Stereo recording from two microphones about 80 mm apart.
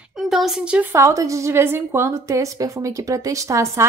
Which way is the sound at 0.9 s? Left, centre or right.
Right.